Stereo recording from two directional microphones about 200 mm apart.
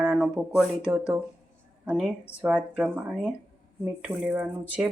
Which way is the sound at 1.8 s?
5° right (ahead or behind).